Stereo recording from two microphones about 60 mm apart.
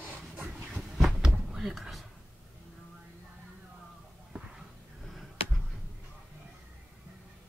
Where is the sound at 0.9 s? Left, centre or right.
Centre.